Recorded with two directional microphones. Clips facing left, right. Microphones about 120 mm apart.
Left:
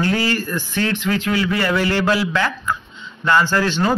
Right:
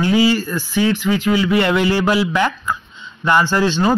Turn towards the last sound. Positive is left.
turn(degrees=-20)  # may be behind; listen again after turning